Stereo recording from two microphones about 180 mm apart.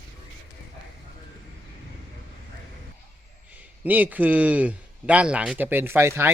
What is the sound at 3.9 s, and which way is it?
Speech, 10° right (ahead or behind).